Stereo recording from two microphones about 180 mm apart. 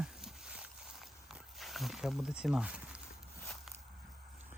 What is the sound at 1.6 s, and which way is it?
Speech, centre (ahead or behind).